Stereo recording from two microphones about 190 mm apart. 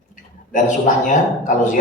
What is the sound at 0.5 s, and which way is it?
A man's voice, 40° left (ahead or behind).